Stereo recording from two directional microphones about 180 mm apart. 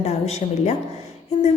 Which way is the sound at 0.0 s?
35° left (ahead or behind).